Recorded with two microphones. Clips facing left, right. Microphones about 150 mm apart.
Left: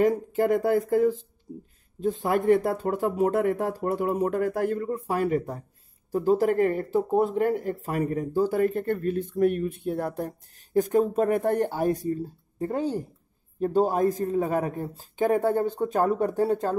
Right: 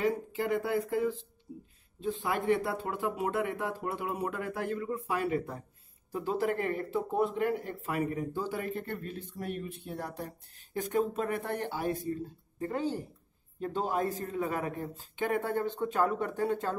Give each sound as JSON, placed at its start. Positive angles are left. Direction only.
{"t": 0.0, "sound": "a man's voice", "side_deg": 45}